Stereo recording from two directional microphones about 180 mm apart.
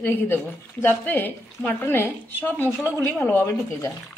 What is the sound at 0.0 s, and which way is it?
Speech, 10° left (ahead or behind).